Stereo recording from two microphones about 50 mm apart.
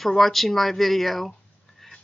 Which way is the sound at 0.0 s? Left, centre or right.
Centre.